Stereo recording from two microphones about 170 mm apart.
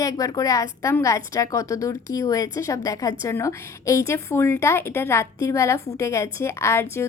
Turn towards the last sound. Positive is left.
turn(degrees=15)  # may be behind; listen again after turning